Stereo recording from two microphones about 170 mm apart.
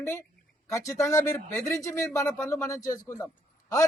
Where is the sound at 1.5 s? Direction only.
20° left (ahead or behind).